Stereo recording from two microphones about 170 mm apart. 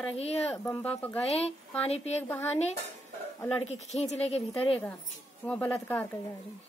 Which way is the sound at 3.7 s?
40° left (ahead or behind).